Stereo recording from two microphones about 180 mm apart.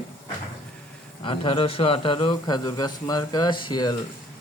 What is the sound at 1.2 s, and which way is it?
A man's voice, 30° left (ahead or behind).